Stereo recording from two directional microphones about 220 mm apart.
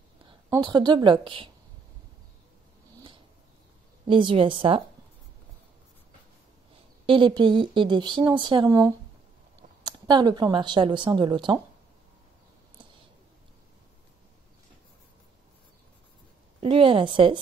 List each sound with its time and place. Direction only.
0.3 s a woman's voice: 20° right (ahead or behind)
4.1 s speech: 25° right (ahead or behind)
7.1 s speech: 20° right (ahead or behind)
16.6 s speech: 25° right (ahead or behind)